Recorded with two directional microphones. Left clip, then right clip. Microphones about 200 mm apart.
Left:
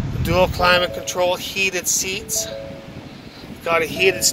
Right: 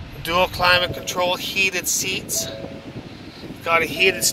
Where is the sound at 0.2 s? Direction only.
25° left (ahead or behind).